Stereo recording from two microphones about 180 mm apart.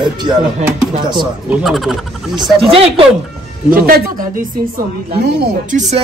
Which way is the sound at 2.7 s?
30° right (ahead or behind).